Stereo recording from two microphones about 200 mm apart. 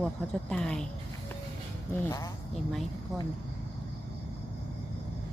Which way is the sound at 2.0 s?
15° left (ahead or behind).